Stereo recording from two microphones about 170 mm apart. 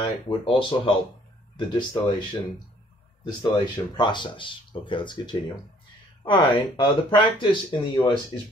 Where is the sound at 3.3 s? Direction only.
25° left (ahead or behind).